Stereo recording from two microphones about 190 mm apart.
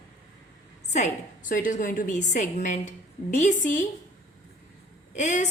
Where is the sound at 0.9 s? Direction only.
40° left (ahead or behind).